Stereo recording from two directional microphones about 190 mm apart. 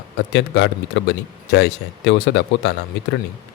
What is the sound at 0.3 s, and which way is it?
Speech, 70° left (ahead or behind).